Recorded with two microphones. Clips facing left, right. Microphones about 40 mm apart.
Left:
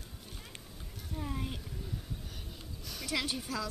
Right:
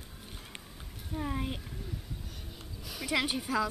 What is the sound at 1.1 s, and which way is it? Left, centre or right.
Speech, centre.